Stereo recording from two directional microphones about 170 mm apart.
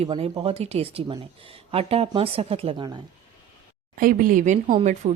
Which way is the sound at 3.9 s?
55° right (ahead or behind).